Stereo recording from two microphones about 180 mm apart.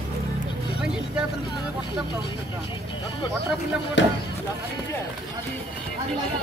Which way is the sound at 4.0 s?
90° left.